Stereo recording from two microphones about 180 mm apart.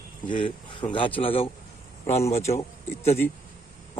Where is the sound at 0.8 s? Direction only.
25° left (ahead or behind).